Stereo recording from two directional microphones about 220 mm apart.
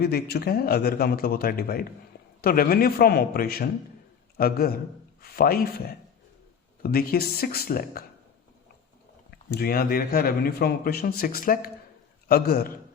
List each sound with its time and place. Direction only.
0.0 s speech: 45° left (ahead or behind)
6.8 s speech: 45° left (ahead or behind)
9.3 s speech: 45° left (ahead or behind)